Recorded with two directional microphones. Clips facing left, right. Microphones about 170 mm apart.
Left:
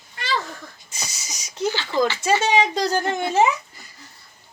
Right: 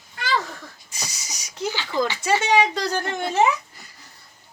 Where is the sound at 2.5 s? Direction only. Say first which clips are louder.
Even; 65° right (ahead or behind).